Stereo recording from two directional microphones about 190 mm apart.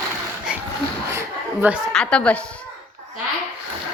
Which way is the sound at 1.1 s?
5° right (ahead or behind).